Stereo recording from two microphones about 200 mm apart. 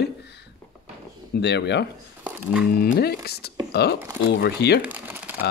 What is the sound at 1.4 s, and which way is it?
Speech, 60° left (ahead or behind).